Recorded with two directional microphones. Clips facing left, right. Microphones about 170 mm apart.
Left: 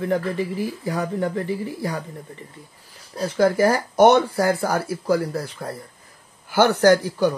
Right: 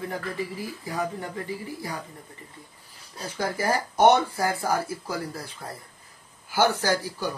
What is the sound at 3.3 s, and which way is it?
Speech, 75° left (ahead or behind).